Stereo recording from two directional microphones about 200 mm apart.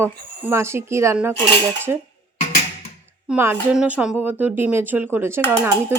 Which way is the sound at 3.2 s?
10° right (ahead or behind).